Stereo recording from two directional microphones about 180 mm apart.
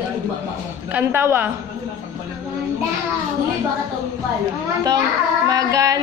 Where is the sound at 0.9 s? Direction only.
10° right (ahead or behind).